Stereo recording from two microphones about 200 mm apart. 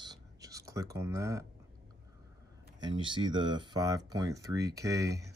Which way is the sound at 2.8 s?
25° right (ahead or behind).